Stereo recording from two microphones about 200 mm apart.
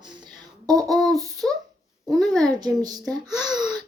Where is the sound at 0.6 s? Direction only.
20° right (ahead or behind).